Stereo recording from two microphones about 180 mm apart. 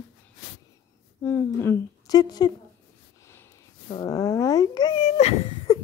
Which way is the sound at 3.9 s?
20° left (ahead or behind).